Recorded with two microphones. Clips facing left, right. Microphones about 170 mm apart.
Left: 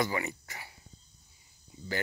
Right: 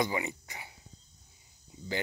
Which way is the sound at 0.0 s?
20° right (ahead or behind).